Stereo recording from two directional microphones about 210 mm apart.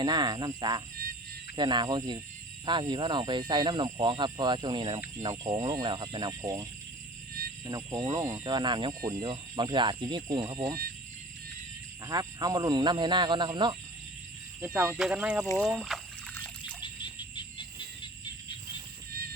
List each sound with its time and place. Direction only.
0.0 s speech: 20° right (ahead or behind)
12.0 s speech: 15° right (ahead or behind)
14.6 s speech: 10° right (ahead or behind)
16.3 s trickle: 10° left (ahead or behind)
16.8 s wild animals: 20° left (ahead or behind)